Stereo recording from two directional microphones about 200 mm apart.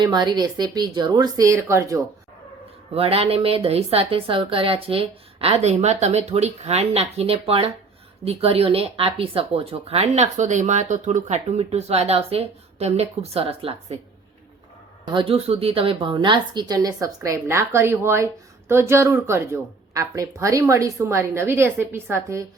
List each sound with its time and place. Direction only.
0.0 s a woman's voice: 20° right (ahead or behind)
2.9 s a woman's voice: 30° right (ahead or behind)
15.0 s a woman's voice: 25° right (ahead or behind)